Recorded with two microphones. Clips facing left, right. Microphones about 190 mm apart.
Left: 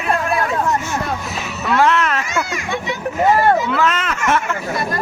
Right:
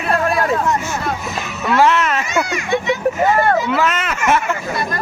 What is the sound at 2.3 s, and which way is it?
Children playing, 20° right (ahead or behind).